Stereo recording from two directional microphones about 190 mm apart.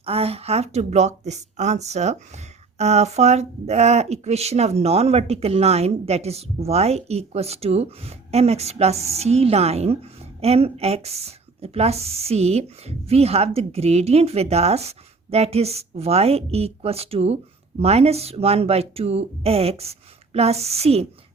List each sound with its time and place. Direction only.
0.0 s speech: 30° right (ahead or behind)